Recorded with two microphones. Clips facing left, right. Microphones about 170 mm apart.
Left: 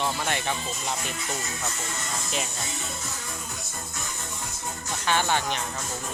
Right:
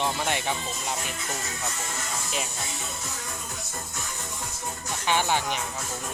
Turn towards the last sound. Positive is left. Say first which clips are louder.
# even
turn(degrees=-10)  # may be behind; listen again after turning